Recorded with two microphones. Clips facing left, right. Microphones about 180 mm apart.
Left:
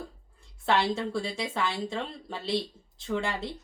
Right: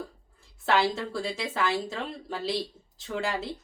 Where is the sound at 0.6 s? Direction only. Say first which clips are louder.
Right 1 dB; centre (ahead or behind).